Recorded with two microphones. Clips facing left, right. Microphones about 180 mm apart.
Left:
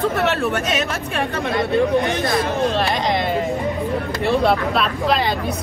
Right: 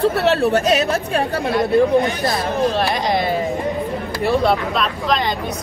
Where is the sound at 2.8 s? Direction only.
Centre (ahead or behind).